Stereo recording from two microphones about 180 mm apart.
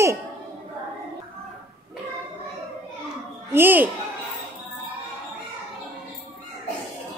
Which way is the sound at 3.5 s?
10° right (ahead or behind).